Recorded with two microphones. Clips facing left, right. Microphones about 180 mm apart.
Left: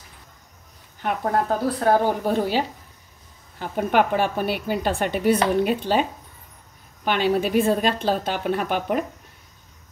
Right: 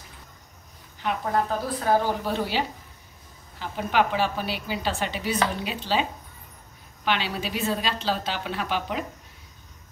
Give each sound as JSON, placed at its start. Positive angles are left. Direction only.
{"t": 1.0, "sound": "a woman's voice", "side_deg": 50}
{"t": 7.1, "sound": "a woman's voice", "side_deg": 50}